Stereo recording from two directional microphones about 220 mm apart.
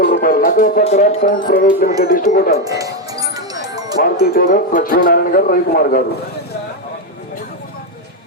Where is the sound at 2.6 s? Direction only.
15° right (ahead or behind).